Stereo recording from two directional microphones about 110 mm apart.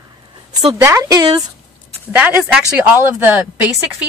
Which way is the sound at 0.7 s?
25° right (ahead or behind).